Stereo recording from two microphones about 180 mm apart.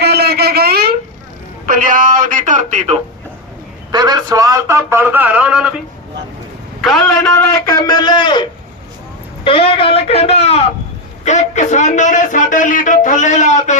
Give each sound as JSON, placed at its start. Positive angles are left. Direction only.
{"t": 0.0, "sound": "a sound", "side_deg": -60}
{"t": 1.6, "sound": "a man's voice", "side_deg": -50}
{"t": 3.9, "sound": "a man's voice", "side_deg": -20}
{"t": 6.8, "sound": "a man's voice", "side_deg": 0}
{"t": 7.7, "sound": "a man's voice", "side_deg": 20}
{"t": 11.3, "sound": "a sound", "side_deg": 40}